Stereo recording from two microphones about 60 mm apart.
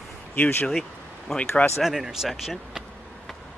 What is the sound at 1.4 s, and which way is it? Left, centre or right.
Speech, left.